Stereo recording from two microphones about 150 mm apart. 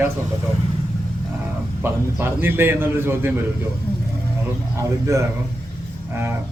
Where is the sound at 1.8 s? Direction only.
15° right (ahead or behind).